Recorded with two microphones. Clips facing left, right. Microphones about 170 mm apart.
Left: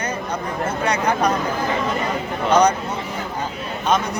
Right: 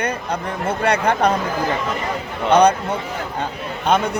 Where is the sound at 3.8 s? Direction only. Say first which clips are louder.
Right 2 dB; 60° right (ahead or behind).